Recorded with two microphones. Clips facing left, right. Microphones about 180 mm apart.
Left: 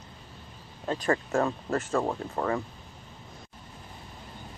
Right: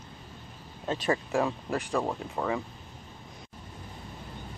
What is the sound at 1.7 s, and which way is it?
Speech, centre (ahead or behind).